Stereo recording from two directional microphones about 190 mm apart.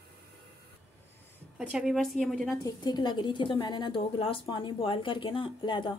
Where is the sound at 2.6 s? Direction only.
20° left (ahead or behind).